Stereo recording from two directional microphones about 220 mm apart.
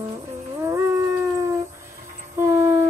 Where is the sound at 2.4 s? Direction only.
10° right (ahead or behind).